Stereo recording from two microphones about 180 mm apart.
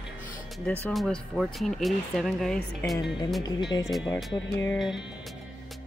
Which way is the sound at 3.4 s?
25° left (ahead or behind).